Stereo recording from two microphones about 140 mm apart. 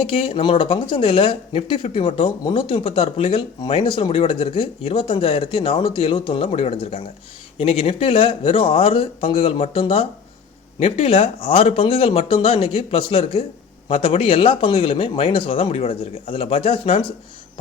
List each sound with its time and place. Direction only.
0.0 s speech: 40° left (ahead or behind)